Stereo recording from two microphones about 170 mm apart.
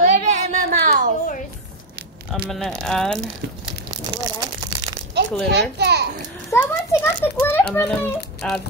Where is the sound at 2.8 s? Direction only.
5° left (ahead or behind).